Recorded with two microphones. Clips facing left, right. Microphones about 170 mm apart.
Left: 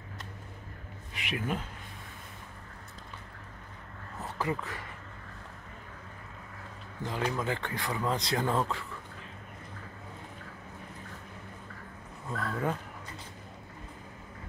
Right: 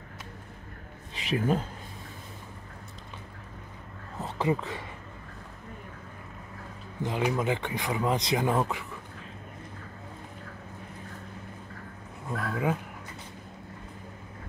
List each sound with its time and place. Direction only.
1.1 s speech: 35° right (ahead or behind)
4.2 s speech: 25° right (ahead or behind)
7.0 s speech: 20° right (ahead or behind)
12.3 s speech: 10° right (ahead or behind)